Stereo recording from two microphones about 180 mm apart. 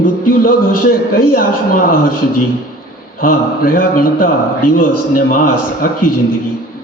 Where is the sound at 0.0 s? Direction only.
50° left (ahead or behind).